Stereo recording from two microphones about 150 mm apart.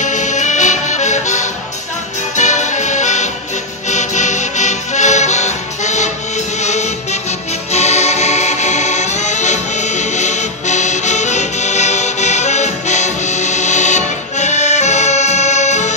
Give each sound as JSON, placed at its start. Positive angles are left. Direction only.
{"t": 0.0, "sound": "music", "side_deg": 55}
{"t": 3.9, "sound": "accordion", "side_deg": 50}
{"t": 6.6, "sound": "music", "side_deg": 50}